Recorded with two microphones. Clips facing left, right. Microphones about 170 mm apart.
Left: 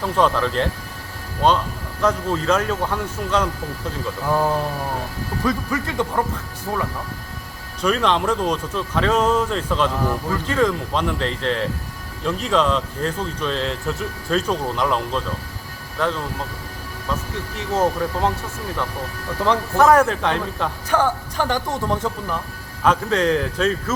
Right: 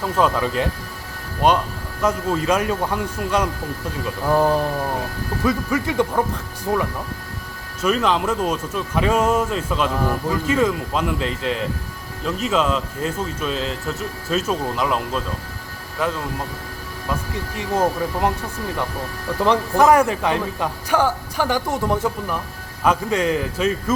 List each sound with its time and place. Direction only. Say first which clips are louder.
0.0 s speech: even; 10° right (ahead or behind)
5.5 s speech: right 2 dB; 10° right (ahead or behind)
7.8 s speech: even; 5° right (ahead or behind)
17.6 s speech: even; 10° right (ahead or behind)
19.4 s speech: right 1 dB; 15° right (ahead or behind)